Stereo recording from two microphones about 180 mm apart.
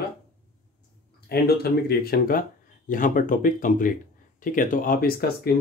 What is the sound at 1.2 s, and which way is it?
Speech, 60° left (ahead or behind).